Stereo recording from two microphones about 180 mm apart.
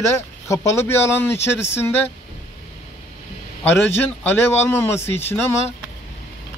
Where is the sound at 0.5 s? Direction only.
15° left (ahead or behind).